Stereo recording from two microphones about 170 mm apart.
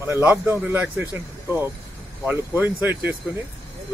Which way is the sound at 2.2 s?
10° right (ahead or behind).